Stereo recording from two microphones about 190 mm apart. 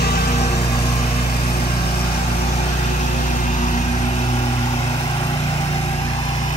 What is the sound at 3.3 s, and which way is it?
Vehicle, 40° left (ahead or behind).